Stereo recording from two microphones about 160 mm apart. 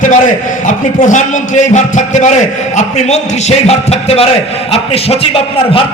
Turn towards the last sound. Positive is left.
turn(degrees=40)  # may be behind; listen again after turning